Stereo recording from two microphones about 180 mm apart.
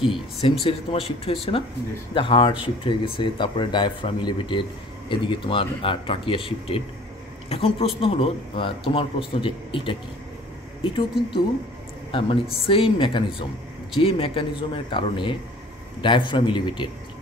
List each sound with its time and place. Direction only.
0.4 s speech: 35° left (ahead or behind)